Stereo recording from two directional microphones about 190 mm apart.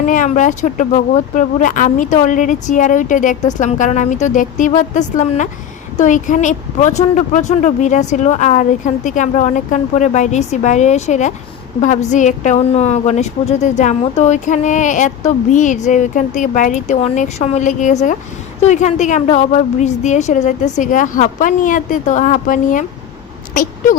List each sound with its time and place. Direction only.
0.1 s a woman's voice: 40° left (ahead or behind)